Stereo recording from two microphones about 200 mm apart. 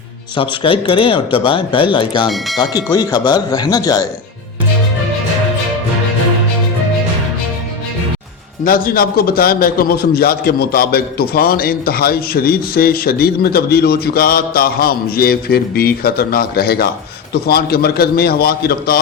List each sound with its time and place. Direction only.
0.3 s speech: 25° left (ahead or behind)
8.6 s a man's voice: 45° left (ahead or behind)